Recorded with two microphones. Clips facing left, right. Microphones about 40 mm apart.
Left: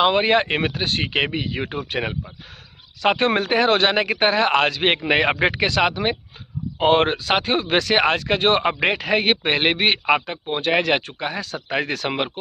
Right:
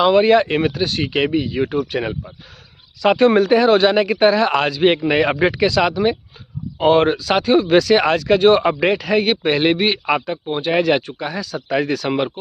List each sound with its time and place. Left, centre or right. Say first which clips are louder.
0.0 s a man's voice: right 4 dB; left